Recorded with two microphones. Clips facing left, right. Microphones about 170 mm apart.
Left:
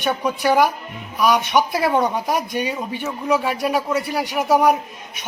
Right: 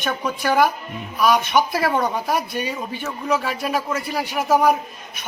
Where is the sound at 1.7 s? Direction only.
10° left (ahead or behind).